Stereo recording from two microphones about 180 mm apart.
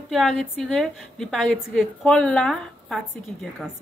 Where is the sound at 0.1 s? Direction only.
Centre (ahead or behind).